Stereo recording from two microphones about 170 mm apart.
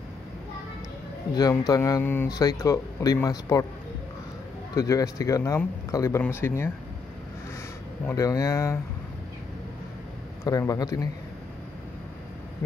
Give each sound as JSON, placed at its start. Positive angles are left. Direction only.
{"t": 1.3, "sound": "speech", "side_deg": 20}
{"t": 4.7, "sound": "speech", "side_deg": 20}
{"t": 8.1, "sound": "speech", "side_deg": 20}
{"t": 10.4, "sound": "speech", "side_deg": 20}